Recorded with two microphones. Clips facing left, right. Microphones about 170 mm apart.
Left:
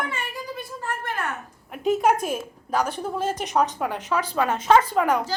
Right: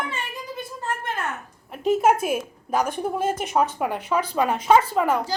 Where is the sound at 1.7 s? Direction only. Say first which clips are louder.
Right 1 dB; centre (ahead or behind).